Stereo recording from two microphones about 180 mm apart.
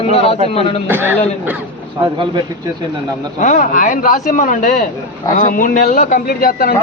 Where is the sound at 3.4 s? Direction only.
45° left (ahead or behind).